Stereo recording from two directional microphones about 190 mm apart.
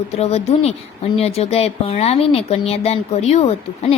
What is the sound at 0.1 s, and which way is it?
Speech, 35° left (ahead or behind).